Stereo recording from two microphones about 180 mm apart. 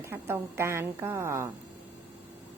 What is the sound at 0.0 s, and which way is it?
A woman's voice, 15° right (ahead or behind).